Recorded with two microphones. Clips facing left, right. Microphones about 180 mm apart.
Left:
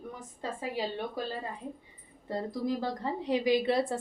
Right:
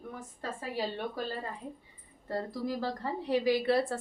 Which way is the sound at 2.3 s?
20° left (ahead or behind).